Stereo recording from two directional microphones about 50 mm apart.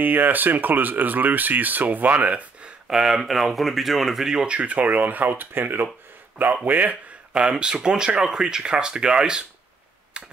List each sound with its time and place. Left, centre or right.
0.0 s speech: right
2.9 s speech: centre
4.5 s speech: right
6.3 s speech: right
7.3 s speech: centre
10.1 s finger snapping: centre